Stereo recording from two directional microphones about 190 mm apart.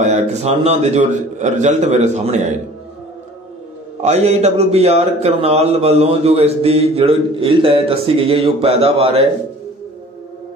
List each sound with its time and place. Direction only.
0.0 s speech: 35° right (ahead or behind)
4.0 s speech: 35° right (ahead or behind)